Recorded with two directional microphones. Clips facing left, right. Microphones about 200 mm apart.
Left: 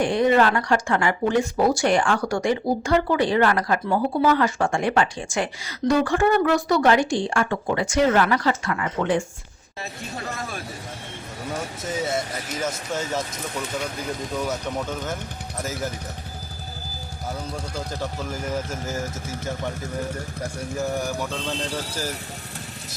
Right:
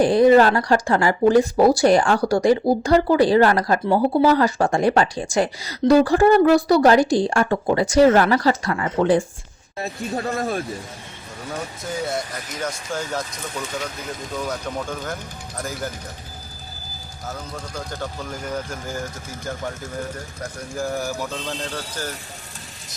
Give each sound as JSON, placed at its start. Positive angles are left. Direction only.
{"t": 0.0, "sound": "speech", "side_deg": -35}
{"t": 10.2, "sound": "speech", "side_deg": -55}
{"t": 11.8, "sound": "speech", "side_deg": 0}
{"t": 14.3, "sound": "speech", "side_deg": 5}
{"t": 17.2, "sound": "speech", "side_deg": 10}
{"t": 20.6, "sound": "speech", "side_deg": 0}